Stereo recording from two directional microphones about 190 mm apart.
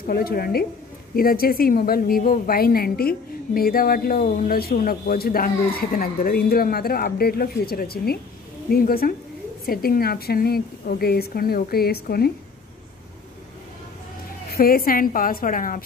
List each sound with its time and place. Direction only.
0.0 s a woman's voice: 50° left (ahead or behind)
14.5 s a woman's voice: 50° left (ahead or behind)